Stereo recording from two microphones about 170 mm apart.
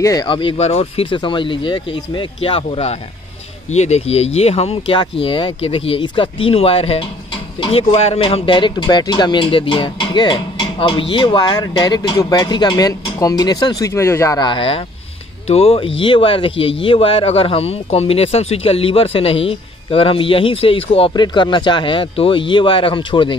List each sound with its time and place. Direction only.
0.0 s a man's voice: 20° left (ahead or behind)